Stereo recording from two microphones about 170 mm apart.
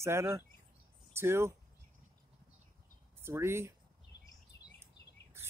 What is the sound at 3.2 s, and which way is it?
Speech, 15° right (ahead or behind).